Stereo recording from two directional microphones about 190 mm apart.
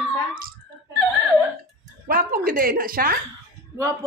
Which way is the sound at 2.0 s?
50° right (ahead or behind).